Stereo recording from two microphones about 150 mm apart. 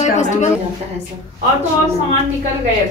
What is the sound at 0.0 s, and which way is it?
Speech, 50° left (ahead or behind).